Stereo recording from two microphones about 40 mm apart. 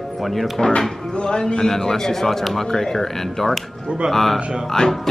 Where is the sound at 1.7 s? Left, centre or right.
Centre.